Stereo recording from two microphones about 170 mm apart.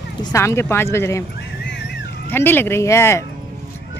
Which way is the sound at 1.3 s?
90° left.